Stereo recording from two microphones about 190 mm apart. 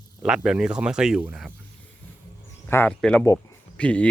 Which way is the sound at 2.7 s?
10° left (ahead or behind).